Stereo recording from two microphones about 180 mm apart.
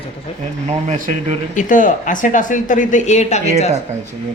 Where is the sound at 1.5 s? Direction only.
45° left (ahead or behind).